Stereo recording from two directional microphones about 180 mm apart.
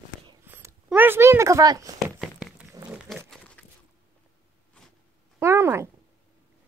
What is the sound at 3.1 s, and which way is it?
Pig, 5° left (ahead or behind).